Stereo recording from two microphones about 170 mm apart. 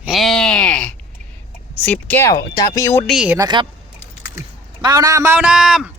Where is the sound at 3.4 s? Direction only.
25° right (ahead or behind).